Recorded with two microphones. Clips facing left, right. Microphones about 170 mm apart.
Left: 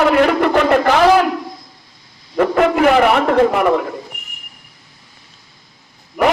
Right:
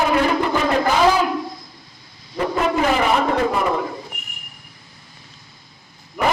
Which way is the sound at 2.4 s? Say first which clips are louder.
Left 7 dB; 65° left (ahead or behind).